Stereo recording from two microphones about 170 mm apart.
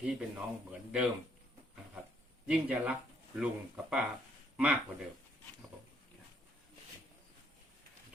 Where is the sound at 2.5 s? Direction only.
10° right (ahead or behind).